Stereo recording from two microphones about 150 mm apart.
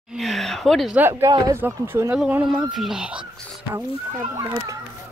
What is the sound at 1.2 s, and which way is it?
Speech, 25° right (ahead or behind).